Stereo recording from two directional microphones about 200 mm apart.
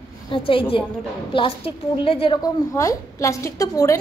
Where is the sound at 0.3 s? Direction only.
25° left (ahead or behind).